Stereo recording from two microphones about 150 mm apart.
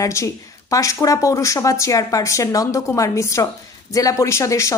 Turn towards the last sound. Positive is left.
turn(degrees=20)  # may be behind; listen again after turning